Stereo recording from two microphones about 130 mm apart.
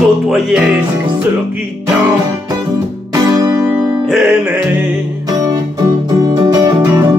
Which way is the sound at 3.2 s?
25° right (ahead or behind).